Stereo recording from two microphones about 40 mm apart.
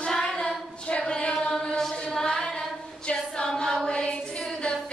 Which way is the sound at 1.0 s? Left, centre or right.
Left.